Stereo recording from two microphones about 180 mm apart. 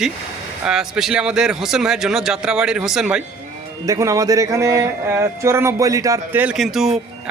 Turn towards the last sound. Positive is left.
turn(degrees=0)  # may be behind; listen again after turning